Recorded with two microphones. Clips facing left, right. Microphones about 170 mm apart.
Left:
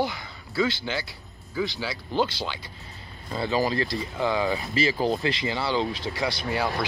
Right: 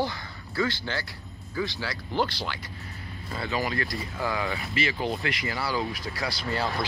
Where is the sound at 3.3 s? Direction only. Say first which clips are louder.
Left 5 dB; 35° left (ahead or behind).